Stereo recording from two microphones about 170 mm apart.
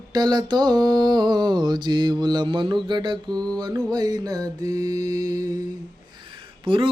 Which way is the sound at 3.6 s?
25° right (ahead or behind).